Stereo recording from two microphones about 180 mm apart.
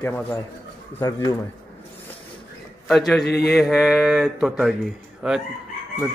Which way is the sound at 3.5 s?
Centre (ahead or behind).